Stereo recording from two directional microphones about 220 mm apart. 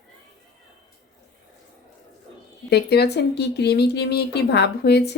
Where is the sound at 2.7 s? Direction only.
50° left (ahead or behind).